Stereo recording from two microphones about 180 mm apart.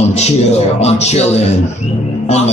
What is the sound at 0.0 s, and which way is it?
Speech, 35° left (ahead or behind).